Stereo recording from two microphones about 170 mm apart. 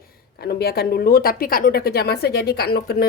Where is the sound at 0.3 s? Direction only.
65° left (ahead or behind).